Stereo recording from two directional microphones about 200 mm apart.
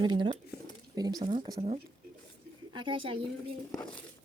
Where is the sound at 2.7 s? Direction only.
25° right (ahead or behind).